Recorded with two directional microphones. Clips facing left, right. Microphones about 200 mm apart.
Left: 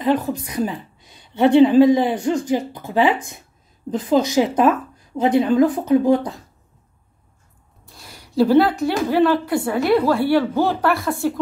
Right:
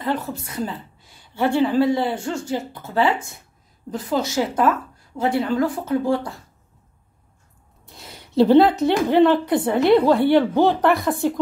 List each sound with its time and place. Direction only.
0.0 s a woman's voice: 15° left (ahead or behind)
7.8 s a woman's voice: 20° right (ahead or behind)